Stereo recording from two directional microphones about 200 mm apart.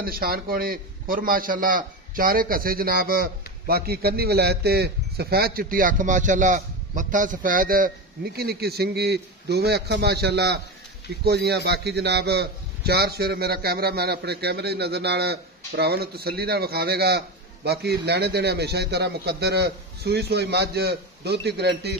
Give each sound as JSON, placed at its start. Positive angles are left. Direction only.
{"t": 0.0, "sound": "a man's voice", "side_deg": -50}